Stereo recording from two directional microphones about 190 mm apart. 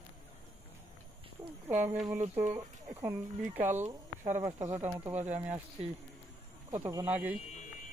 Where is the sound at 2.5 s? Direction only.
20° right (ahead or behind).